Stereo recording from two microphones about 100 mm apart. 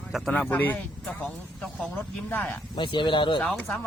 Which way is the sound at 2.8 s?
50° left (ahead or behind).